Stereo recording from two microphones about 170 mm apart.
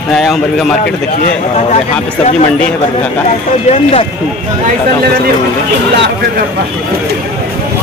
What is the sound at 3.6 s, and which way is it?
Speech, 35° left (ahead or behind).